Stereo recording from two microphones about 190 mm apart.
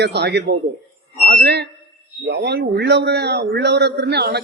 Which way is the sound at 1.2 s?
50° right (ahead or behind).